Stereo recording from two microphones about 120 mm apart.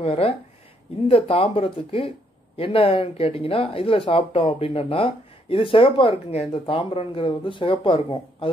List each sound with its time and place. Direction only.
0.0 s speech: 50° left (ahead or behind)
6.6 s speech: 45° left (ahead or behind)